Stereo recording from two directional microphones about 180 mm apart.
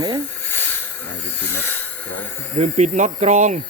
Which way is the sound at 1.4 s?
10° left (ahead or behind).